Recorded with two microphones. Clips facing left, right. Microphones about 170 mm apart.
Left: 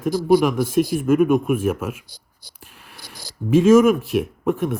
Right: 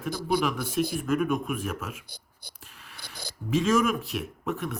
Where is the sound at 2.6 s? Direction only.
55° left (ahead or behind).